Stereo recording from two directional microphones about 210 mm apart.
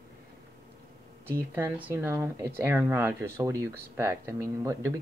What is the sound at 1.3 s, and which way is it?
Speech, 10° right (ahead or behind).